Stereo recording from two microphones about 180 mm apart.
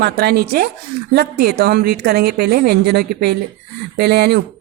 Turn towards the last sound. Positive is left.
turn(degrees=-65)  # may be behind; listen again after turning